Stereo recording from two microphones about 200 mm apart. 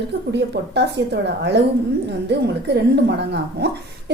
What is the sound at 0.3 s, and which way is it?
A woman's voice, 60° right (ahead or behind).